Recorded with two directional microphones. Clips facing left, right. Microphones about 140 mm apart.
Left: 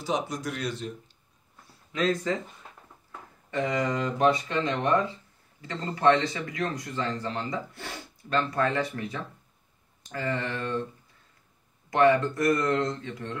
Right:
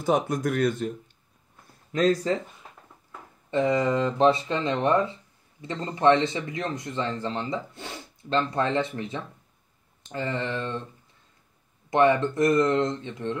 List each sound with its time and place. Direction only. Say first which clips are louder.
0.0 s speech: right 6 dB; 50° right (ahead or behind)
1.9 s speech: right 4 dB; 40° right (ahead or behind)
3.4 s a man's voice: right 5 dB; 25° right (ahead or behind)
11.9 s a man's voice: right 1 dB; 25° right (ahead or behind)